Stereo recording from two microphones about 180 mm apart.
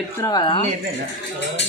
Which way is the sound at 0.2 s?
25° left (ahead or behind).